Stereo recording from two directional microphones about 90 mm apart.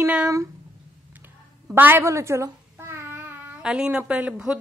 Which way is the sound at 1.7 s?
25° right (ahead or behind).